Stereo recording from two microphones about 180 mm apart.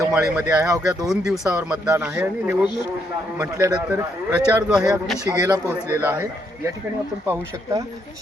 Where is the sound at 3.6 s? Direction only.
20° right (ahead or behind).